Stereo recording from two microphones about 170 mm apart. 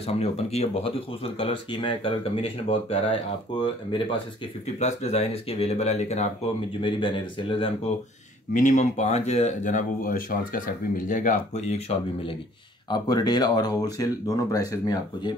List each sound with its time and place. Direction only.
0.0 s speech: 35° left (ahead or behind)
4.7 s speech: 40° left (ahead or behind)
6.8 s speech: 30° left (ahead or behind)
8.5 s speech: 45° left (ahead or behind)
12.9 s speech: 25° left (ahead or behind)